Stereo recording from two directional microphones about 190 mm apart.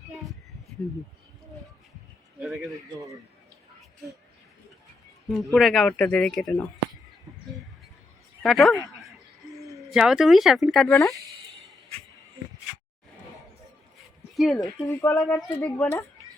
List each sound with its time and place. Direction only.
2.4 s a man's voice: centre (ahead or behind)
5.3 s speech: centre (ahead or behind)
8.4 s a sound: centre (ahead or behind)
9.6 s speech: centre (ahead or behind)
14.3 s speech: centre (ahead or behind)
14.6 s speech: 15° left (ahead or behind)